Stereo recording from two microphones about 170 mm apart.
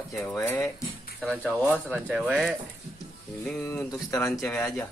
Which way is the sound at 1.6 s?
10° right (ahead or behind).